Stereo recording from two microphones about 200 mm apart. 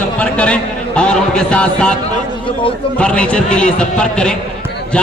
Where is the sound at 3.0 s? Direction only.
5° left (ahead or behind).